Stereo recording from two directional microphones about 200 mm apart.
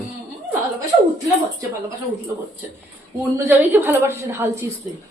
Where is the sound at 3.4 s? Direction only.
10° right (ahead or behind).